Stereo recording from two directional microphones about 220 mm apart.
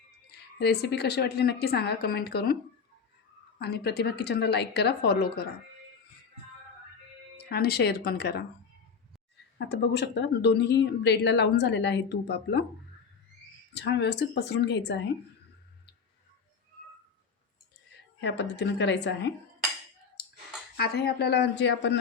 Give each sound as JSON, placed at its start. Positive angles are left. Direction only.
{"t": 0.3, "sound": "speech", "side_deg": 50}
{"t": 3.6, "sound": "speech", "side_deg": 50}
{"t": 7.5, "sound": "speech", "side_deg": 45}
{"t": 9.6, "sound": "speech", "side_deg": 50}
{"t": 13.7, "sound": "speech", "side_deg": 50}
{"t": 18.2, "sound": "speech", "side_deg": 50}
{"t": 20.7, "sound": "speech", "side_deg": 45}